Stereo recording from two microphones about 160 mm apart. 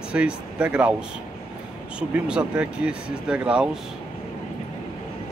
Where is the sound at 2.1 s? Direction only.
5° right (ahead or behind).